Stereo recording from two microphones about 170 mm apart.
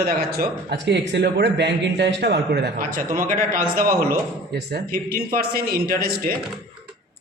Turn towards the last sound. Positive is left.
turn(degrees=-60)  # may be behind; listen again after turning